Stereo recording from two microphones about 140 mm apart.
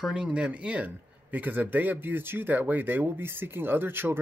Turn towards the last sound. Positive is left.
turn(degrees=-15)  # may be behind; listen again after turning